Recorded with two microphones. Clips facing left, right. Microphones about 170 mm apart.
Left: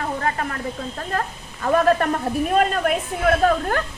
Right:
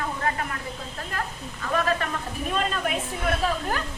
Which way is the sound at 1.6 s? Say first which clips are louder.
Left 8 dB; 45° left (ahead or behind).